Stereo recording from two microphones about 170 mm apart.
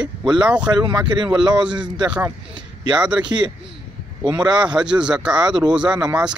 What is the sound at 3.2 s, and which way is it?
Speech, 25° right (ahead or behind).